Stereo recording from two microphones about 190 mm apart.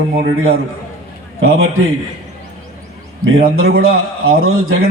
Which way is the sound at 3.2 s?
90° right.